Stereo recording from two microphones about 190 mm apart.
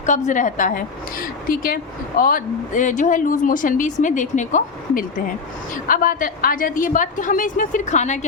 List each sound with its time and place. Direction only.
0.0 s a woman's voice: 40° left (ahead or behind)